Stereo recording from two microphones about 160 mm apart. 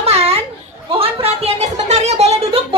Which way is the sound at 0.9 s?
35° right (ahead or behind).